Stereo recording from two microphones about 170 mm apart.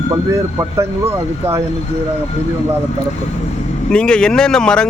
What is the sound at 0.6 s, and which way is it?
Speech, 15° right (ahead or behind).